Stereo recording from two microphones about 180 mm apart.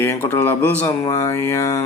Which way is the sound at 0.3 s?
10° left (ahead or behind).